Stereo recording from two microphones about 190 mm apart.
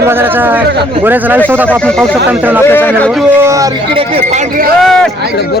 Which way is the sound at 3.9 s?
35° right (ahead or behind).